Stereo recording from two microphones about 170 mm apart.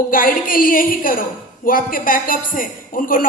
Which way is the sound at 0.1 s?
55° left (ahead or behind).